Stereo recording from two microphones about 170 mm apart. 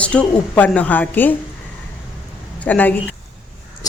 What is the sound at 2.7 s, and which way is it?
Speech, 10° left (ahead or behind).